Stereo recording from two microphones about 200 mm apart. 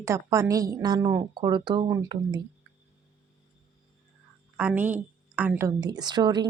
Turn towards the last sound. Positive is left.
turn(degrees=-20)  # may be behind; listen again after turning